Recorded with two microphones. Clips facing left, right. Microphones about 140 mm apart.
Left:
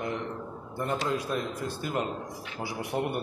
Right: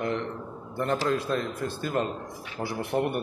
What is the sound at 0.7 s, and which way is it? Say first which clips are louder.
Speech: right 3 dB; 20° left (ahead or behind).